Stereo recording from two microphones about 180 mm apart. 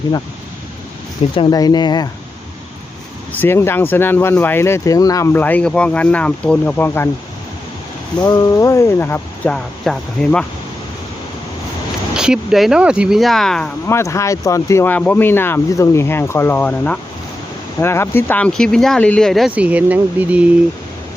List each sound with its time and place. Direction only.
1.4 s speech: 20° left (ahead or behind)
3.4 s speech: 15° left (ahead or behind)
8.2 s speech: 20° left (ahead or behind); by 10.4 s 5° left (ahead or behind)
12.1 s speech: 5° right (ahead or behind)
13.8 s speech: 15° left (ahead or behind); by 20.5 s 10° right (ahead or behind)